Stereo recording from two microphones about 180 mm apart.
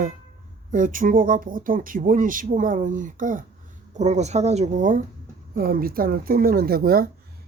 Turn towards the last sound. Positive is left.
turn(degrees=-55)  # may be behind; listen again after turning